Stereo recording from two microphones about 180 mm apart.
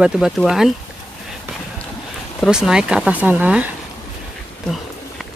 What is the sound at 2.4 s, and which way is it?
Speech, 5° right (ahead or behind).